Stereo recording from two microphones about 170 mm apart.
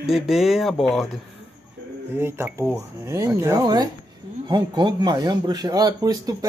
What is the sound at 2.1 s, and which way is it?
Speech, 15° right (ahead or behind).